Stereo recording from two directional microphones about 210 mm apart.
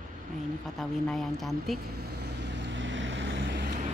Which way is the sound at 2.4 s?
60° right (ahead or behind).